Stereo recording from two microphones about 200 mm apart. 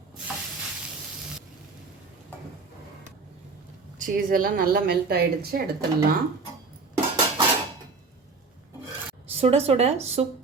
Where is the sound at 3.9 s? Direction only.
45° right (ahead or behind).